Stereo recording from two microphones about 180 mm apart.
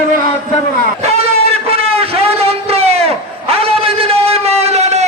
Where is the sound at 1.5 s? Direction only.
35° right (ahead or behind).